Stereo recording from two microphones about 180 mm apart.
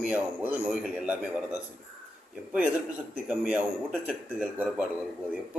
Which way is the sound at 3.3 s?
5° right (ahead or behind).